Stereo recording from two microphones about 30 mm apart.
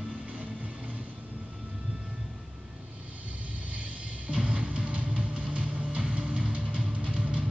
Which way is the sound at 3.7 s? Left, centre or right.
Right.